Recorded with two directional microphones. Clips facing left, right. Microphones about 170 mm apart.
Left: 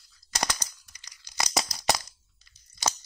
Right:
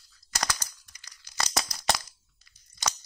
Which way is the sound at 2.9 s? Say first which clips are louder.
Left 2 dB; 30° left (ahead or behind).